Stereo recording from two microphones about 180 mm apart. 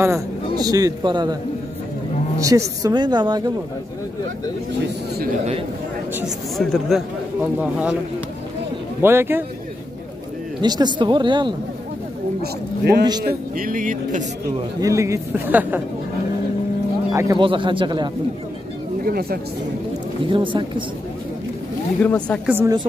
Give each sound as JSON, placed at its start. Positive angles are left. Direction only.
{"t": 0.0, "sound": "a man's voice", "side_deg": -20}
{"t": 4.8, "sound": "speech", "side_deg": -60}
{"t": 6.1, "sound": "speech", "side_deg": 0}
{"t": 9.0, "sound": "speech", "side_deg": -10}
{"t": 10.6, "sound": "speech", "side_deg": -25}
{"t": 12.4, "sound": "speech", "side_deg": -60}
{"t": 14.8, "sound": "speech", "side_deg": -15}
{"t": 17.1, "sound": "speech", "side_deg": -15}
{"t": 17.4, "sound": "speech", "side_deg": -25}
{"t": 19.0, "sound": "speech", "side_deg": -60}
{"t": 20.2, "sound": "speech", "side_deg": -25}
{"t": 22.0, "sound": "speech", "side_deg": 5}
{"t": 22.5, "sound": "speech", "side_deg": -15}